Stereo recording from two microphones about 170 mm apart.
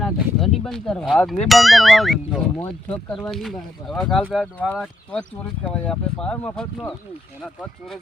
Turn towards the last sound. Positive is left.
turn(degrees=0)  # may be behind; listen again after turning